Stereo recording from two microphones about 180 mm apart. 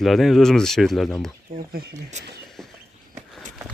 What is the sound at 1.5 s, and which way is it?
Speech, 50° right (ahead or behind).